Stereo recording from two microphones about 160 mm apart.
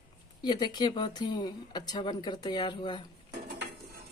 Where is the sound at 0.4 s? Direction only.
25° left (ahead or behind).